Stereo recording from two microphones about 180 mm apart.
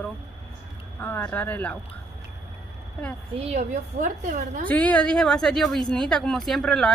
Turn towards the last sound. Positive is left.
turn(degrees=5)  # may be behind; listen again after turning